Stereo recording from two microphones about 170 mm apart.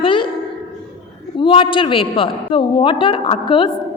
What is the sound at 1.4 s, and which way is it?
A woman's voice, 30° left (ahead or behind).